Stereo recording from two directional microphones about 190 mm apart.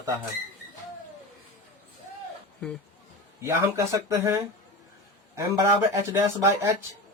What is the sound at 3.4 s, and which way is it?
Speech, 15° right (ahead or behind).